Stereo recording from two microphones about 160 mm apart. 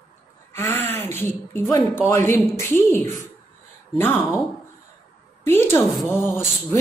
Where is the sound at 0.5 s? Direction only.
15° left (ahead or behind).